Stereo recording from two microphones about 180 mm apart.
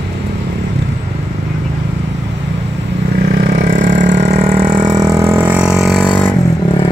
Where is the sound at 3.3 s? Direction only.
70° right (ahead or behind).